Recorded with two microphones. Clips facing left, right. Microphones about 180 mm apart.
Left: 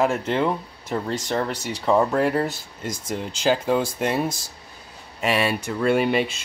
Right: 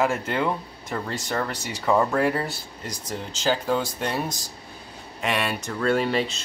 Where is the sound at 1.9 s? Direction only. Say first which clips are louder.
Left 2 dB; centre (ahead or behind).